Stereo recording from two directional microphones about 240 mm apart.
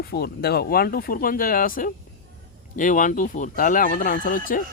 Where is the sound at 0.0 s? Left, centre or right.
Left.